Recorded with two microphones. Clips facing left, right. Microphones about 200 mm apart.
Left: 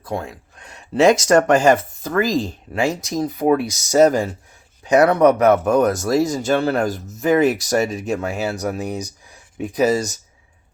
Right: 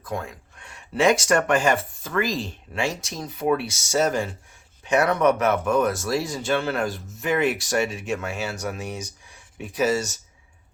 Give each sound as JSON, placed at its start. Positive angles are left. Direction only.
{"t": 0.0, "sound": "speech", "side_deg": 30}